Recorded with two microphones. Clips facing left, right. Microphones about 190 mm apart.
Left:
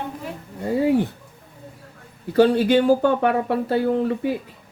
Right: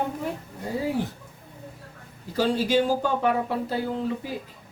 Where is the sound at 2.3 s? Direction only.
60° left (ahead or behind).